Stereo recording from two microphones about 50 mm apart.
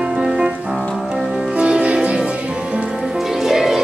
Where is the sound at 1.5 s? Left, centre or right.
Right.